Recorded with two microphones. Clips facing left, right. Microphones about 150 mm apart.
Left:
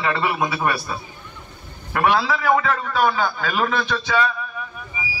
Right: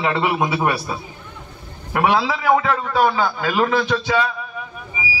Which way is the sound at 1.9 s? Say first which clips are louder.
Right 1 dB; 15° right (ahead or behind).